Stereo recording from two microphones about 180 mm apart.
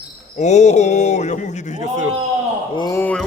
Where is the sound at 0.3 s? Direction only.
40° left (ahead or behind).